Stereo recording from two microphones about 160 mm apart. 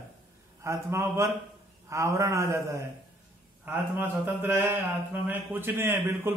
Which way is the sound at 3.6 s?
10° right (ahead or behind).